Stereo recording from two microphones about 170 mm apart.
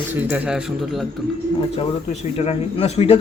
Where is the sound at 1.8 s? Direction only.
35° left (ahead or behind).